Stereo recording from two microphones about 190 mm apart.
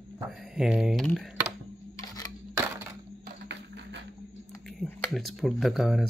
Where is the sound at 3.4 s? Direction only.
70° right (ahead or behind).